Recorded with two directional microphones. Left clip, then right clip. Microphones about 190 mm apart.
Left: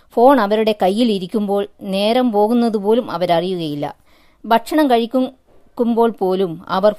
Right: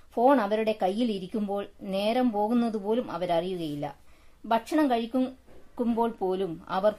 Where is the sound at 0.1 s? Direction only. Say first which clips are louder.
Left 11 dB; 45° left (ahead or behind).